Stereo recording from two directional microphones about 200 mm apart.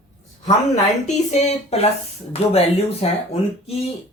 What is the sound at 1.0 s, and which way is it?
Speech, 35° left (ahead or behind).